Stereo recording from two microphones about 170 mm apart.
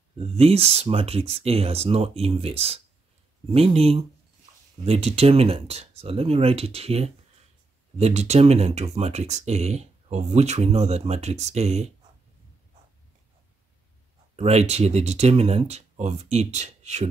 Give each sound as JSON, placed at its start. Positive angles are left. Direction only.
{"t": 0.2, "sound": "speech", "side_deg": -35}
{"t": 14.3, "sound": "speech", "side_deg": -40}